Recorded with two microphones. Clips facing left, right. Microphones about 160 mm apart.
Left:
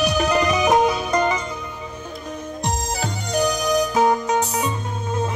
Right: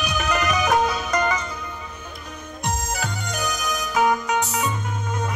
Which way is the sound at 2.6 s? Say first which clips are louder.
Left 1 dB; 35° left (ahead or behind).